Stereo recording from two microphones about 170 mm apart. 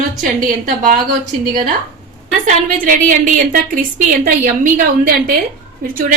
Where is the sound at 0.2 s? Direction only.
50° right (ahead or behind).